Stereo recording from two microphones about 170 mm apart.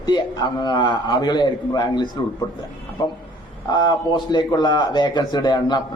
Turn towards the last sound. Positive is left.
turn(degrees=25)  # may be behind; listen again after turning